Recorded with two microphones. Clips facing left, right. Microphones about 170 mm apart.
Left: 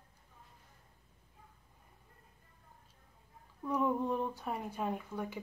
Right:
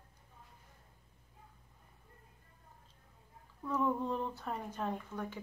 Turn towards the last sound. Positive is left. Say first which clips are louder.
# left 1 dB
turn(degrees=10)  # may be behind; listen again after turning